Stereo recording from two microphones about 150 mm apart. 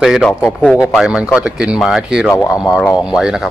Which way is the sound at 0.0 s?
Centre (ahead or behind).